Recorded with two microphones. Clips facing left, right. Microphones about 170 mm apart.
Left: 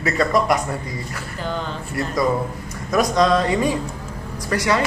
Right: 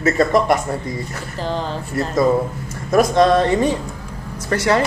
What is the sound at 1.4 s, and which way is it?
A man's voice, 35° right (ahead or behind).